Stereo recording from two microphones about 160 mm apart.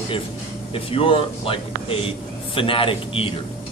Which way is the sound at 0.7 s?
35° left (ahead or behind).